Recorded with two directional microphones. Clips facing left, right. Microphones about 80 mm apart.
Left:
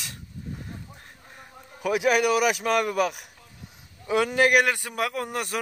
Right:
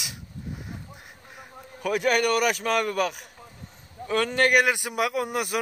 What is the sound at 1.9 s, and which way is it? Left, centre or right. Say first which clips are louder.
Speech: left 1 dB; centre.